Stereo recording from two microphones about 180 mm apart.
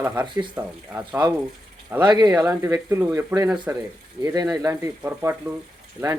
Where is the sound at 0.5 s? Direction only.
10° right (ahead or behind).